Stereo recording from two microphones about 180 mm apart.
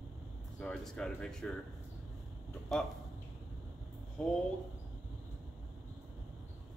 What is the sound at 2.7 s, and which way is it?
Speech, centre (ahead or behind).